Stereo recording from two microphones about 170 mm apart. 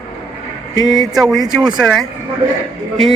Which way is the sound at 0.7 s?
20° left (ahead or behind).